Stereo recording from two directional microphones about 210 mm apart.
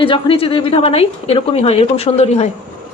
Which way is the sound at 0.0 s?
25° left (ahead or behind).